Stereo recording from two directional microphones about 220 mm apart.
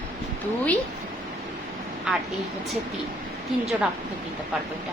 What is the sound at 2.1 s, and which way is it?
Speech, centre (ahead or behind).